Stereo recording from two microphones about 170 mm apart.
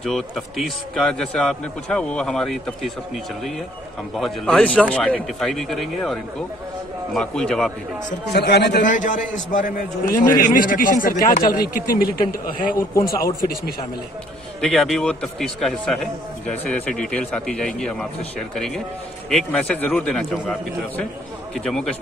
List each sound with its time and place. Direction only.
0.0 s a man's voice: centre (ahead or behind)
4.2 s a man's voice: 5° left (ahead or behind)
7.2 s a man's voice: 5° left (ahead or behind)
8.3 s a man's voice: 75° left (ahead or behind)
8.8 s a man's voice: 50° left (ahead or behind)
10.0 s a man's voice: 20° left (ahead or behind)
10.3 s a man's voice: 55° left (ahead or behind)
14.6 s a man's voice: centre (ahead or behind)
19.2 s a man's voice: 5° left (ahead or behind)
21.5 s a man's voice: 5° left (ahead or behind)